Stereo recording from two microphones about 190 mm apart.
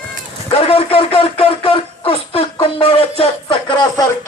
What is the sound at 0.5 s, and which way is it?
Speech, 30° left (ahead or behind).